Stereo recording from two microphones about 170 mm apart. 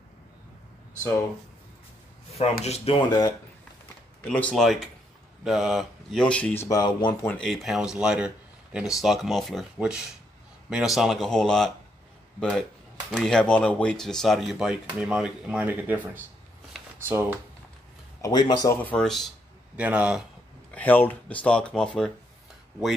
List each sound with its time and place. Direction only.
2.6 s speech: 35° left (ahead or behind)
3.1 s speech: 25° left (ahead or behind)
4.2 s speech: 10° left (ahead or behind); by 7.2 s 25° left (ahead or behind)
7.2 s speech: 5° left (ahead or behind)
17.1 s speech: 15° right (ahead or behind)
18.2 s speech: 25° left (ahead or behind)
18.8 s speech: 5° left (ahead or behind)
20.7 s speech: 10° left (ahead or behind)